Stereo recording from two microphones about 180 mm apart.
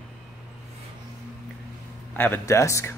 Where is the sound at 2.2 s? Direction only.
15° left (ahead or behind).